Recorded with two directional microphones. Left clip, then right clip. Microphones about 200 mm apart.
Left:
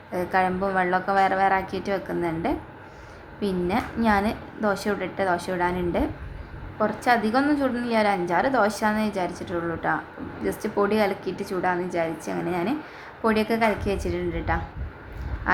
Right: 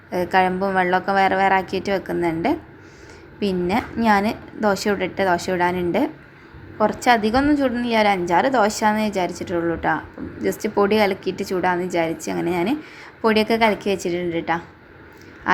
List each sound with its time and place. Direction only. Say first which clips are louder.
0.1 s a woman's voice: right 5 dB; 20° right (ahead or behind)